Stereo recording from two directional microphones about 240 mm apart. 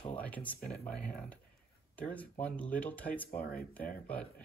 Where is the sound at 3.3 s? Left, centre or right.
Left.